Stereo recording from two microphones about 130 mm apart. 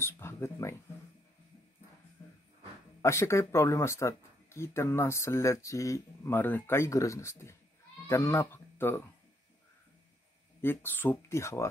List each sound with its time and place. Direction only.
0.0 s a sound: 20° left (ahead or behind)
3.0 s speech: 20° left (ahead or behind)
10.6 s speech: 15° left (ahead or behind)